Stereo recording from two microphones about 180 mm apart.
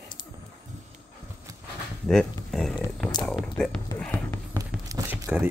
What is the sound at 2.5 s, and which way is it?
Speech, centre (ahead or behind).